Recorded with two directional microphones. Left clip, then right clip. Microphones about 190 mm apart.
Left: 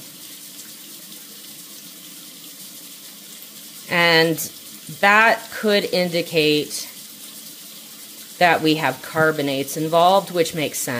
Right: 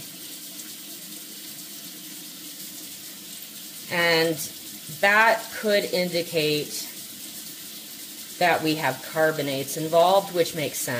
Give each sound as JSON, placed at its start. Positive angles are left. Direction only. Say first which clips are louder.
{"t": 3.9, "sound": "speech", "louder": "left 6 dB", "side_deg": 45}
{"t": 8.4, "sound": "speech", "louder": "left 6 dB", "side_deg": 40}